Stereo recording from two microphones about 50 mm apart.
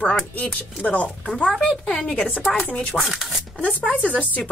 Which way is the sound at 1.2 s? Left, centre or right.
Centre.